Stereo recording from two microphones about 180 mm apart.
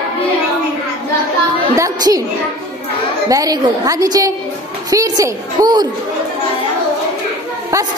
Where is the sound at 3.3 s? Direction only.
20° right (ahead or behind).